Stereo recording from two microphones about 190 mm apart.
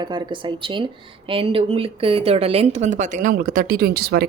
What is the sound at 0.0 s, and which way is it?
Speech, 25° right (ahead or behind).